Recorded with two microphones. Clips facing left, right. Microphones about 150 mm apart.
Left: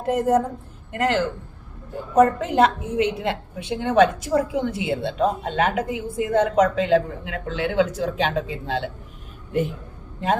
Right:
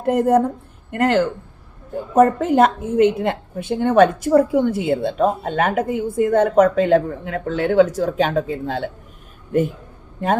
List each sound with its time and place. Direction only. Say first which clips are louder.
0.0 s a woman's voice: right 4 dB; 55° right (ahead or behind)